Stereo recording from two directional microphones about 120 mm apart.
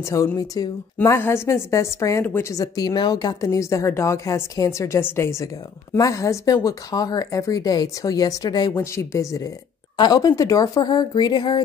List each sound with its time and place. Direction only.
0.1 s a woman's voice: 30° left (ahead or behind)
2.6 s a woman's voice: 30° left (ahead or behind)